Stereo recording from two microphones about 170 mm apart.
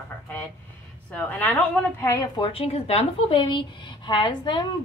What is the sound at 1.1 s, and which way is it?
A woman's voice, 10° left (ahead or behind).